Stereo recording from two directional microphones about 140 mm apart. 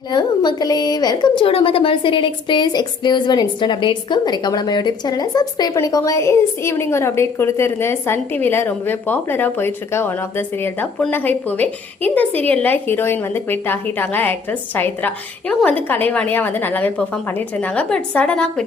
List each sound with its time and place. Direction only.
0.1 s a woman's voice: 30° left (ahead or behind); by 18.6 s 5° left (ahead or behind)